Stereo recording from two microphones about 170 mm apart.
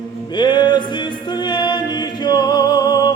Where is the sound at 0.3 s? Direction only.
25° left (ahead or behind).